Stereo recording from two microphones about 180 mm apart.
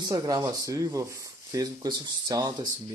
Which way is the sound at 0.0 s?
20° right (ahead or behind).